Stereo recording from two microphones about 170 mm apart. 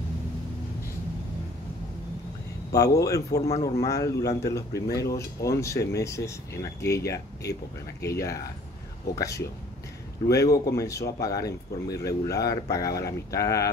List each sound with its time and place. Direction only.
2.7 s speech: 20° left (ahead or behind)
8.0 s speech: 20° left (ahead or behind)